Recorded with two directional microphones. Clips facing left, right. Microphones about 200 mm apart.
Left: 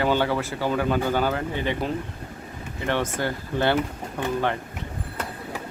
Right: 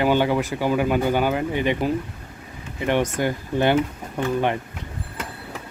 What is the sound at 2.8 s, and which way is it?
Speech, 15° right (ahead or behind).